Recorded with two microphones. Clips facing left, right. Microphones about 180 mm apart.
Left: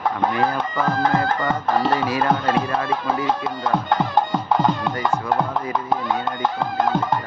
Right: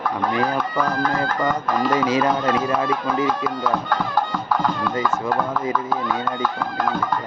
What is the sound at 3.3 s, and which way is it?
Music, 25° left (ahead or behind).